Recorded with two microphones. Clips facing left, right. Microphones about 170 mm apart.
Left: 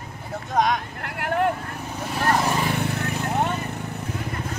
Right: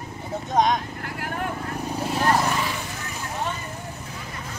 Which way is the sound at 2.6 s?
60° left (ahead or behind).